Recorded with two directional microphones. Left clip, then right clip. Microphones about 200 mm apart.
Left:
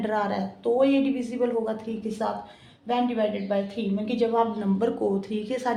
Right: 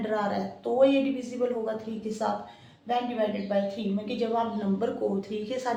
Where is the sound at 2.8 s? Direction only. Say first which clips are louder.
Left 3 dB; 45° left (ahead or behind).